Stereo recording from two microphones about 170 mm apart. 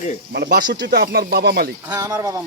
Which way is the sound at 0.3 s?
80° right.